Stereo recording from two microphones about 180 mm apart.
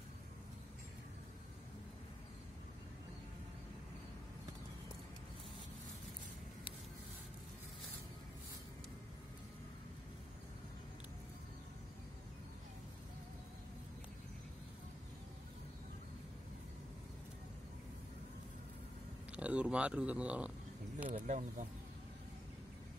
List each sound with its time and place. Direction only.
19.3 s speech: 5° right (ahead or behind)
21.1 s speech: 45° right (ahead or behind)